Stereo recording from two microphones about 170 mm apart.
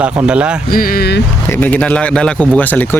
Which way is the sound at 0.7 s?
60° left (ahead or behind).